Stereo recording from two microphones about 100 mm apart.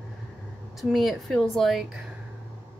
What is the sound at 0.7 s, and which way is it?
Speech, centre (ahead or behind).